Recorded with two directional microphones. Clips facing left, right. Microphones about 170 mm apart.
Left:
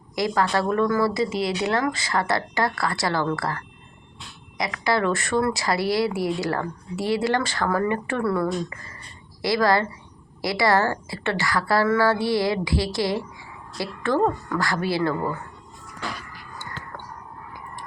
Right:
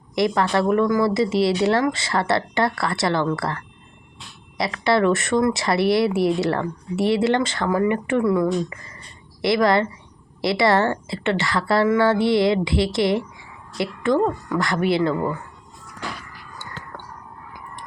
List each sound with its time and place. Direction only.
0.2 s speech: 25° right (ahead or behind)